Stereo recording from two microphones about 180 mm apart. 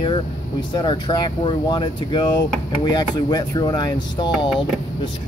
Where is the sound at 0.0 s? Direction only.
25° left (ahead or behind).